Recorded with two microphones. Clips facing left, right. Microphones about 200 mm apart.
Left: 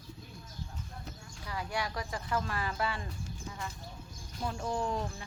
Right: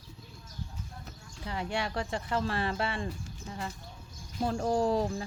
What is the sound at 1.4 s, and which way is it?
Speech, 25° right (ahead or behind).